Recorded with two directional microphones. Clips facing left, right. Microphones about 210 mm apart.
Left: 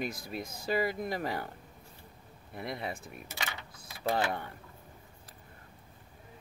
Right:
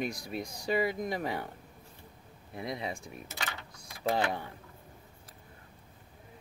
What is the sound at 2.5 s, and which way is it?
Speech, centre (ahead or behind).